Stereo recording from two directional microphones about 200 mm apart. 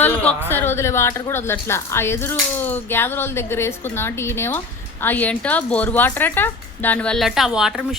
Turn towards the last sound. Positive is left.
turn(degrees=0)  # may be behind; listen again after turning